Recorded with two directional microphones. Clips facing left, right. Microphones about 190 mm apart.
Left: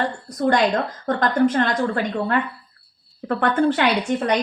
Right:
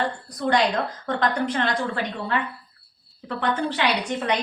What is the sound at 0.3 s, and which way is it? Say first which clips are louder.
A woman's voice: left 4 dB; 45° left (ahead or behind).